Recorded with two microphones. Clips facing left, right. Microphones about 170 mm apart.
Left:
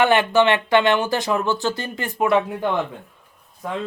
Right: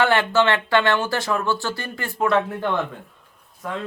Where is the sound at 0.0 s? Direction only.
15° left (ahead or behind).